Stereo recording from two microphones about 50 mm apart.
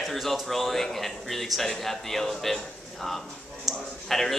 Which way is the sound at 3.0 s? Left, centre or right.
Centre.